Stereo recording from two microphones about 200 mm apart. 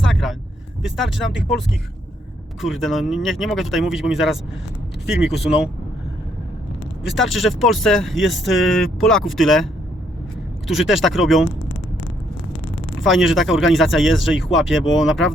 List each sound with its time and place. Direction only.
0.0 s vehicle: centre (ahead or behind)
0.8 s speech: centre (ahead or behind)
5.0 s speech: 55° left (ahead or behind)
5.3 s speech: 5° right (ahead or behind)
7.2 s speech: centre (ahead or behind)
10.7 s speech: centre (ahead or behind)
13.0 s speech: centre (ahead or behind)